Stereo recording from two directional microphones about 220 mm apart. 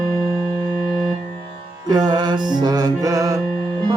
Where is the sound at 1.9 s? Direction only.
20° right (ahead or behind).